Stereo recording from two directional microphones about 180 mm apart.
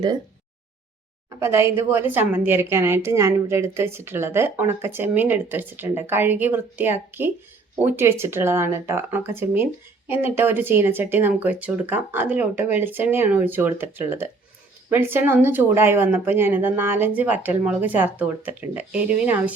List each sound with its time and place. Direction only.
1.4 s a woman's voice: 15° right (ahead or behind)